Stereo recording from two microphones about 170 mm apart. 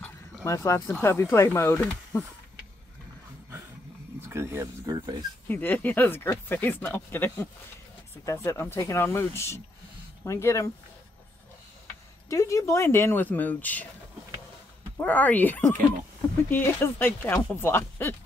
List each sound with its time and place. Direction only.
0.0 s a sound: 15° left (ahead or behind)
1.0 s speech: 15° left (ahead or behind)
4.2 s speech: 15° right (ahead or behind)
5.5 s speech: 10° left (ahead or behind)
12.3 s speech: 20° left (ahead or behind)
15.0 s speech: 10° left (ahead or behind)